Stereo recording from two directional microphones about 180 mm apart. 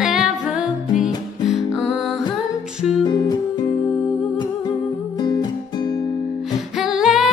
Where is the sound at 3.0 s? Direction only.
20° left (ahead or behind).